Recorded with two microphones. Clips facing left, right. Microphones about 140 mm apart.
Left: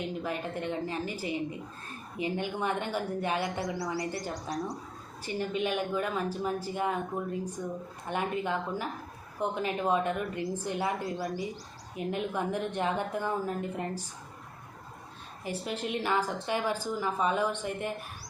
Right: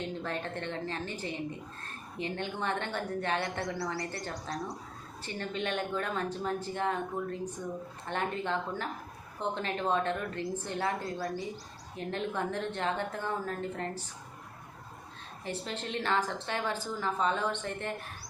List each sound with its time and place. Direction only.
0.0 s a woman's voice: 10° left (ahead or behind)
15.4 s a woman's voice: 10° left (ahead or behind)